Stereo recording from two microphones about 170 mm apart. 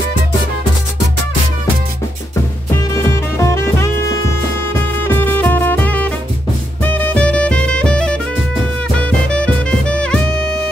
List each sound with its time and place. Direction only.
2.7 s music: 15° left (ahead or behind)
9.3 s music: 5° left (ahead or behind)